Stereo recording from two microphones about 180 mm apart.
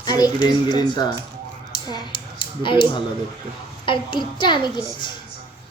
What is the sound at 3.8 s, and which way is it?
A woman's voice, 25° left (ahead or behind).